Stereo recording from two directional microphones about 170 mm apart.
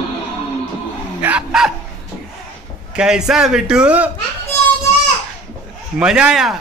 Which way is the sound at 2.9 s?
5° right (ahead or behind).